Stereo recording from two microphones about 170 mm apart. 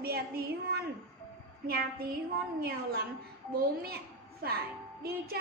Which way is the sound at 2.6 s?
65° right (ahead or behind).